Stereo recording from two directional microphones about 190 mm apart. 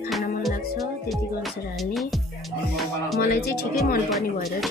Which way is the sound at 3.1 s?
55° left (ahead or behind).